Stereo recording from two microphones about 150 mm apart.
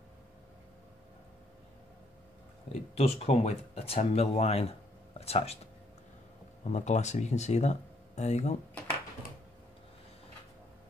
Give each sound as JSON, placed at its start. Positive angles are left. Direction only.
{"t": 2.7, "sound": "speech", "side_deg": 45}
{"t": 6.6, "sound": "speech", "side_deg": 50}